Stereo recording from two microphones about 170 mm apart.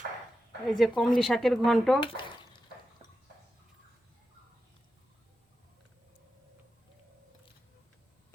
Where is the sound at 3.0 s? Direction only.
35° right (ahead or behind).